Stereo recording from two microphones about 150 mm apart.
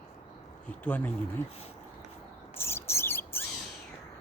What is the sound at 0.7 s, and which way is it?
Speech, 10° left (ahead or behind).